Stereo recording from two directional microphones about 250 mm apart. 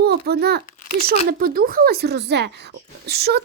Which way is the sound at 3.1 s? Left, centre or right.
Right.